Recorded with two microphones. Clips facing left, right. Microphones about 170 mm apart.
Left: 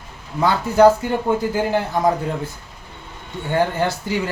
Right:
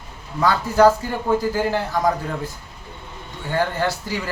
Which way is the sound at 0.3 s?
20° left (ahead or behind).